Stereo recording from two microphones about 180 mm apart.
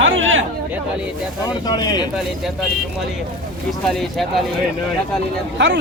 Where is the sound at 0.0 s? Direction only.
90° right.